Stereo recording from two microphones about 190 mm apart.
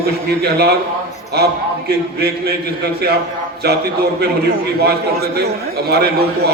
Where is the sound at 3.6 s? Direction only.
60° right (ahead or behind).